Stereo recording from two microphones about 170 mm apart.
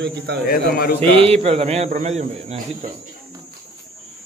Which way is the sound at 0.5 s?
60° left (ahead or behind).